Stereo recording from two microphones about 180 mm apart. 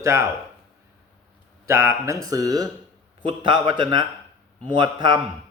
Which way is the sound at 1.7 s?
15° right (ahead or behind).